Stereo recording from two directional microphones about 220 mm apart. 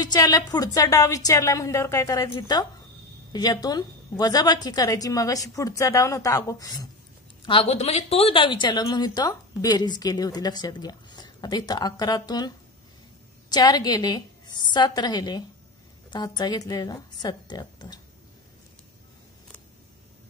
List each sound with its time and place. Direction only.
0.0 s a woman's voice: 15° left (ahead or behind)
7.4 s a woman's voice: 25° left (ahead or behind)